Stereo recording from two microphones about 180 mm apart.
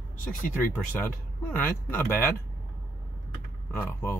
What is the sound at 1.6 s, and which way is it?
Speech, 10° left (ahead or behind).